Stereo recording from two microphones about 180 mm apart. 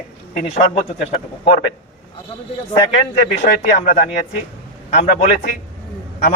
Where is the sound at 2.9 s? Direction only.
40° left (ahead or behind).